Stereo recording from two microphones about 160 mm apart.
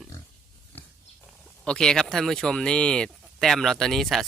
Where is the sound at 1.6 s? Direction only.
5° left (ahead or behind).